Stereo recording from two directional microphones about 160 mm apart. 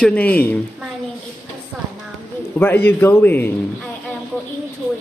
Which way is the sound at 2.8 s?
15° left (ahead or behind).